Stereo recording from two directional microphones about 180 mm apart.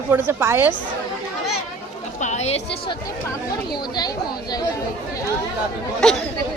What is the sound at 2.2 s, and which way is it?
A woman's voice, 40° left (ahead or behind).